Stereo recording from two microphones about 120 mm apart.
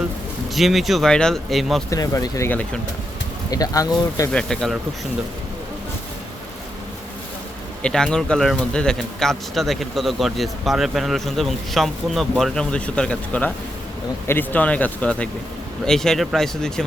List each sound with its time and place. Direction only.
0.5 s speech: centre (ahead or behind)
1.9 s speech: 30° left (ahead or behind)
3.5 s speech: 30° left (ahead or behind)
4.3 s speech: 5° left (ahead or behind)
7.8 s speech: 5° left (ahead or behind)